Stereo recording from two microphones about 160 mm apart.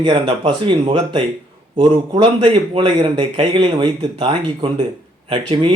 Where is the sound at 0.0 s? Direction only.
30° right (ahead or behind).